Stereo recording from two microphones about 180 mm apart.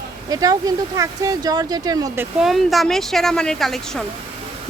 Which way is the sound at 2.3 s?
Centre (ahead or behind).